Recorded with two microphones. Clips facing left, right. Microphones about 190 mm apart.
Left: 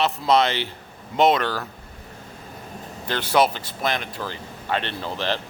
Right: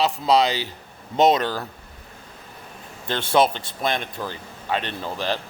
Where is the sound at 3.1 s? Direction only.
25° right (ahead or behind).